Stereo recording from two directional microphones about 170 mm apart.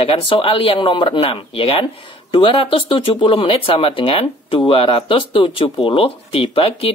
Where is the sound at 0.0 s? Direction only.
35° left (ahead or behind).